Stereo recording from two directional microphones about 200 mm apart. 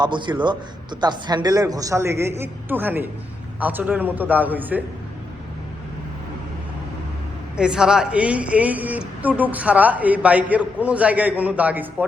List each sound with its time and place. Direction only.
0.0 s a man's voice: 25° right (ahead or behind)
7.5 s a woman's voice: 5° right (ahead or behind)